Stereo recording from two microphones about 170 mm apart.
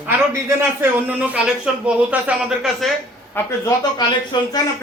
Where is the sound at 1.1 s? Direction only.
5° right (ahead or behind).